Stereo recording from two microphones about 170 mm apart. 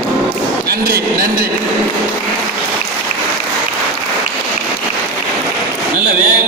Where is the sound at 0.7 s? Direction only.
65° right (ahead or behind).